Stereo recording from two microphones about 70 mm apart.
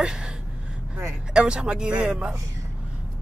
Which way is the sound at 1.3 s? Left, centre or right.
Centre.